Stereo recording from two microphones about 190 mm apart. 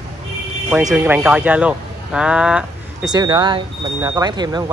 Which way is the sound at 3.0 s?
20° right (ahead or behind).